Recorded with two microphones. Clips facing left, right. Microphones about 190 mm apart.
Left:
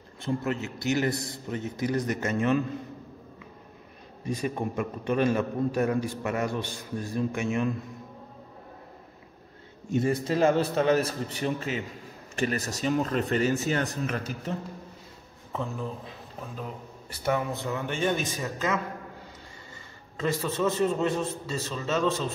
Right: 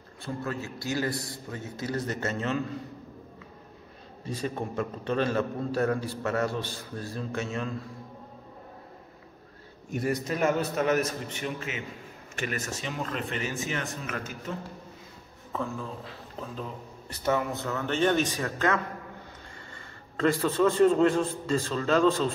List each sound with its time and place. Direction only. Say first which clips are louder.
0.2 s a man's voice: left 4 dB; 20° left (ahead or behind)
4.2 s a man's voice: left 3 dB; 15° left (ahead or behind)
9.8 s a man's voice: left 3 dB; 25° left (ahead or behind)
15.5 s a man's voice: even; 20° left (ahead or behind)
17.1 s a man's voice: even; 10° left (ahead or behind)
20.2 s a man's voice: right 4 dB; 5° left (ahead or behind)